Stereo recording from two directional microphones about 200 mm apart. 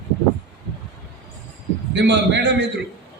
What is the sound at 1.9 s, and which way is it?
Speech, 60° right (ahead or behind).